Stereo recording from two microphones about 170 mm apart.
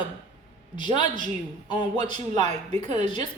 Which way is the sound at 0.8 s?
30° left (ahead or behind).